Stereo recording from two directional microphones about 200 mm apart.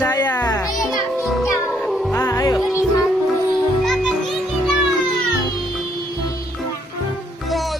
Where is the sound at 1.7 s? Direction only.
Centre (ahead or behind).